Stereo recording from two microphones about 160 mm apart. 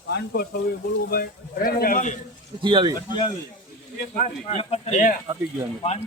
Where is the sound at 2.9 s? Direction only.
25° left (ahead or behind).